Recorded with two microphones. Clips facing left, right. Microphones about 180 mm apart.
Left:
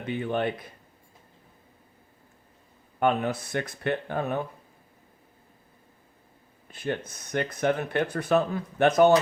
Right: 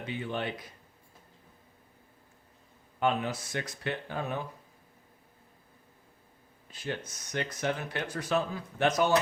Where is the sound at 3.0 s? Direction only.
55° left (ahead or behind).